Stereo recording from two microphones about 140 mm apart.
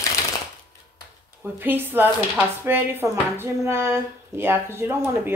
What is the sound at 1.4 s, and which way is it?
Speech, 15° right (ahead or behind).